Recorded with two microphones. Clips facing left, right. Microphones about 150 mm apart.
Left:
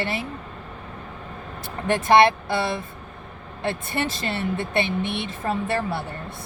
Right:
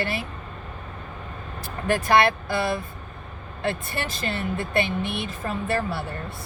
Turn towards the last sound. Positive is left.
turn(degrees=20)  # may be behind; listen again after turning